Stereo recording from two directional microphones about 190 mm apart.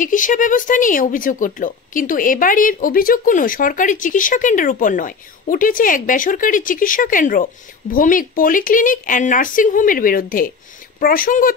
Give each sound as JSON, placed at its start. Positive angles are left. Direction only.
{"t": 0.0, "sound": "a woman's voice", "side_deg": 45}